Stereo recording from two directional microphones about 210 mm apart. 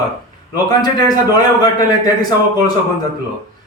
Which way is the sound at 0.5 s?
20° left (ahead or behind).